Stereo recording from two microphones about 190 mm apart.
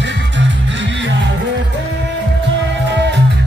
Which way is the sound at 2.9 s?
65° right (ahead or behind).